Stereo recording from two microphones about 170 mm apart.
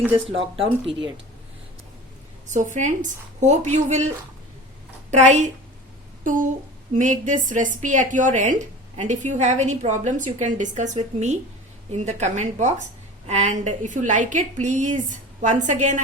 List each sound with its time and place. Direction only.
0.3 s speech: 35° right (ahead or behind)
2.5 s a woman's voice: 45° right (ahead or behind)
5.1 s a woman's voice: 45° right (ahead or behind)
6.9 s a woman's voice: 50° right (ahead or behind)